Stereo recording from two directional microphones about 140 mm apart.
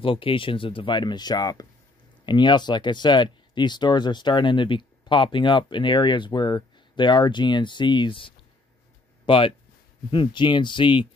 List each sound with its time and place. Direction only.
0.0 s speech: 40° left (ahead or behind)